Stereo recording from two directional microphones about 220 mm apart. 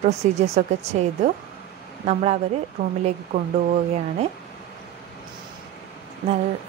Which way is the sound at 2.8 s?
40° right (ahead or behind).